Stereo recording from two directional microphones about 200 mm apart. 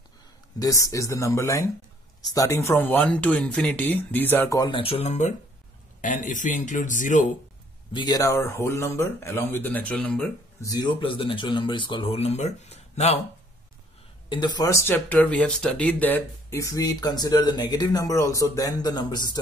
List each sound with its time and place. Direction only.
0.6 s speech: 15° left (ahead or behind); by 7.2 s 40° left (ahead or behind)
7.9 s speech: 20° left (ahead or behind)
10.6 s speech: 20° left (ahead or behind)
14.3 s speech: 20° left (ahead or behind)